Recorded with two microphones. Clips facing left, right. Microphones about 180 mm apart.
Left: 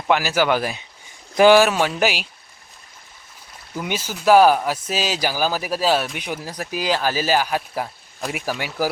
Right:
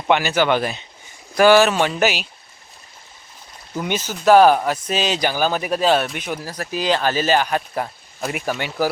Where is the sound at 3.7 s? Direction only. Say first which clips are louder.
Right 3 dB; 5° left (ahead or behind).